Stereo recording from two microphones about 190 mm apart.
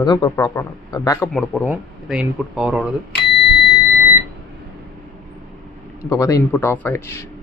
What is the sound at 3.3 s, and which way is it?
Doorbell, centre (ahead or behind).